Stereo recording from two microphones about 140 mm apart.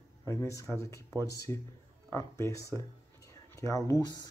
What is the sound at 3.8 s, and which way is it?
Speech, 25° left (ahead or behind).